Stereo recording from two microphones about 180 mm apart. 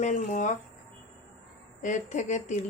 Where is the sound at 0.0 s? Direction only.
40° left (ahead or behind).